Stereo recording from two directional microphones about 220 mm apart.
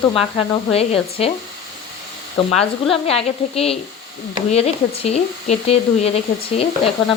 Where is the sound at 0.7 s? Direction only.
25° left (ahead or behind).